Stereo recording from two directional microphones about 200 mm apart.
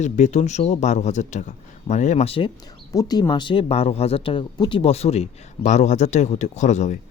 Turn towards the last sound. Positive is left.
turn(degrees=35)  # may be behind; listen again after turning